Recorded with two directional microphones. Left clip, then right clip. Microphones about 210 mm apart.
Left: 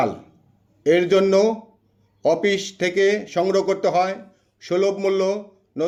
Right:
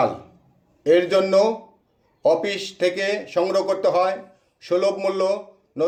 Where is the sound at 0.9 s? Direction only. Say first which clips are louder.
Left 1 dB; 45° left (ahead or behind).